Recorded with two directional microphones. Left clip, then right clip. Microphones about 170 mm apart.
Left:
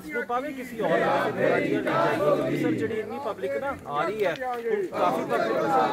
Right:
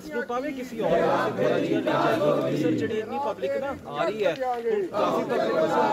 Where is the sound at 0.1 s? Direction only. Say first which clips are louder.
Even; 30° right (ahead or behind).